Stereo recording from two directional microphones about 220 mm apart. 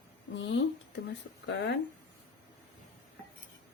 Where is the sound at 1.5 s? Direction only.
50° left (ahead or behind).